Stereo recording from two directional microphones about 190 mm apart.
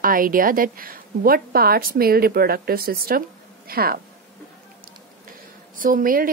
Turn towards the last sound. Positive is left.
turn(degrees=-45)  # may be behind; listen again after turning